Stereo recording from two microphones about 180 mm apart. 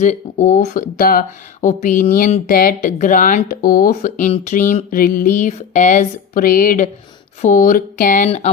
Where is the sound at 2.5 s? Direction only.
50° left (ahead or behind).